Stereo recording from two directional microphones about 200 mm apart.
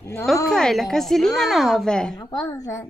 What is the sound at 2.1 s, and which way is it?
Speech, 20° left (ahead or behind).